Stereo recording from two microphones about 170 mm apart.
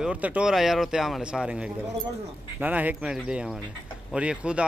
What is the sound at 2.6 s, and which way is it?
A man's voice, 10° right (ahead or behind).